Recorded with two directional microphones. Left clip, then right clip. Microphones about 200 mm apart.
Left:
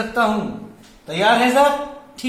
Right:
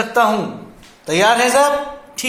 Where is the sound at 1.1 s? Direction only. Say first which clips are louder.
Right 3 dB; 35° right (ahead or behind).